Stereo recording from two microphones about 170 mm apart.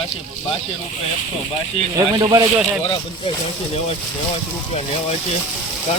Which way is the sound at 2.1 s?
20° right (ahead or behind).